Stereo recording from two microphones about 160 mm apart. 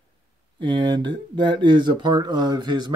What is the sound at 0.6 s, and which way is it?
Speech, 30° right (ahead or behind).